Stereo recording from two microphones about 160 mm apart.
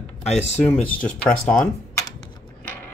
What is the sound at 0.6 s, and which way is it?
Speech, 5° left (ahead or behind).